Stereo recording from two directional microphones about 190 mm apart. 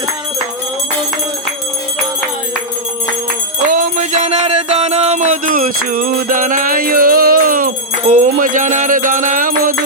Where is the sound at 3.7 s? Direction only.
40° right (ahead or behind).